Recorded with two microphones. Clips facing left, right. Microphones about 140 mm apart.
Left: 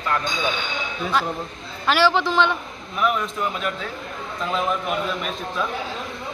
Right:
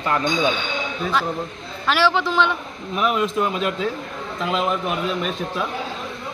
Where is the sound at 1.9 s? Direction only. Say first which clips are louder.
Even; centre (ahead or behind).